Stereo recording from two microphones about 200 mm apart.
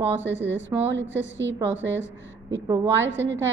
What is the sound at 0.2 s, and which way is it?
A woman's voice, 65° right (ahead or behind).